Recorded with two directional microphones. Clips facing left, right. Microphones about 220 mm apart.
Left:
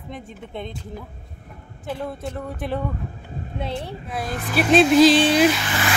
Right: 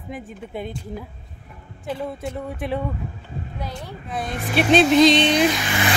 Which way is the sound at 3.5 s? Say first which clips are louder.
Left 7 dB; 30° left (ahead or behind).